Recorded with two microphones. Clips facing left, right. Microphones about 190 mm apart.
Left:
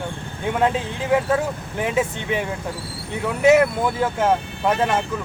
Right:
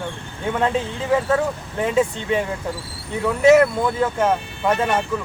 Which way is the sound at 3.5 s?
5° left (ahead or behind).